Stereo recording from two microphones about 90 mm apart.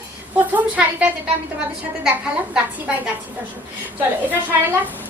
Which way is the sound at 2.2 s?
15° right (ahead or behind).